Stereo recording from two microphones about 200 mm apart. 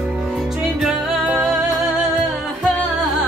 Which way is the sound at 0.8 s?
5° right (ahead or behind).